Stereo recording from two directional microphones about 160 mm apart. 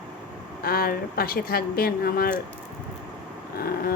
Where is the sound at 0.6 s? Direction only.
70° left (ahead or behind).